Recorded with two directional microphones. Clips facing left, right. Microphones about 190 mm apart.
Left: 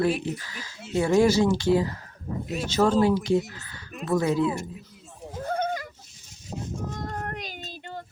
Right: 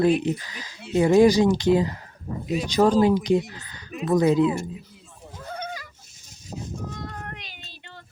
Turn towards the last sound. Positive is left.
turn(degrees=45)  # may be behind; listen again after turning